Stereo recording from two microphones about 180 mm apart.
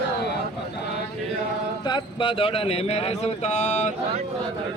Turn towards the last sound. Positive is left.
turn(degrees=40)  # may be behind; listen again after turning